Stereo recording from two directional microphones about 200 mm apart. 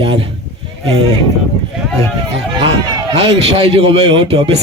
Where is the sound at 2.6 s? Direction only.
20° right (ahead or behind).